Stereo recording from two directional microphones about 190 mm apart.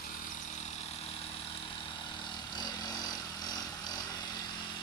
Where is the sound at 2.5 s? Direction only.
20° left (ahead or behind).